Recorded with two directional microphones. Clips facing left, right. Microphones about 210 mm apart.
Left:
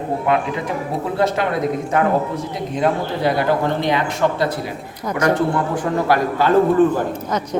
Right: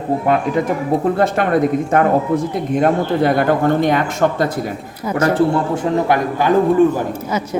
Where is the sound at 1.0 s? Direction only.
50° right (ahead or behind).